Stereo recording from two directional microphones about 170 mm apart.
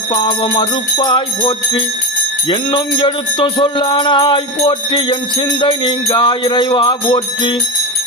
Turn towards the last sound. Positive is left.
turn(degrees=30)  # may be behind; listen again after turning